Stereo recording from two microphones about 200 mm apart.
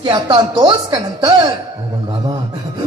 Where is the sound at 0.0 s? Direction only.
20° right (ahead or behind).